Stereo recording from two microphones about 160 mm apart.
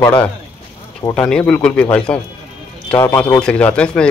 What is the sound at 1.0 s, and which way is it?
Speech, 20° left (ahead or behind).